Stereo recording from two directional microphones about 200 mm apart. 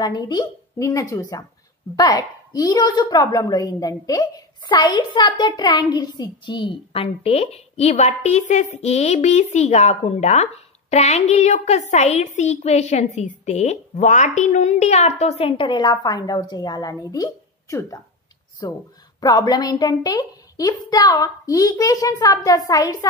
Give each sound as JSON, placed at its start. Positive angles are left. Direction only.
{"t": 0.0, "sound": "a woman's voice", "side_deg": 20}